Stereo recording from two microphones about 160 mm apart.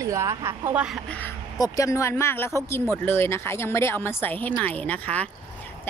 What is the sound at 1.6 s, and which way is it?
A woman's voice, 20° left (ahead or behind).